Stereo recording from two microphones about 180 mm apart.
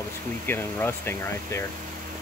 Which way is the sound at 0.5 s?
10° left (ahead or behind).